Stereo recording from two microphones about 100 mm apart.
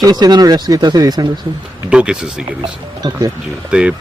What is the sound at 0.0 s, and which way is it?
Speech, 45° right (ahead or behind).